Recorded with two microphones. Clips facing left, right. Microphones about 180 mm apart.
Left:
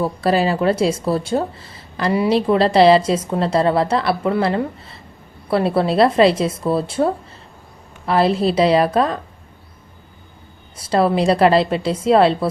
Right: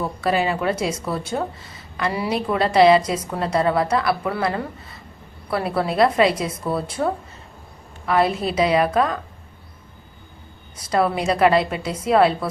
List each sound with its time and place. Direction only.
0.0 s a woman's voice: 35° left (ahead or behind)
10.8 s speech: 30° left (ahead or behind)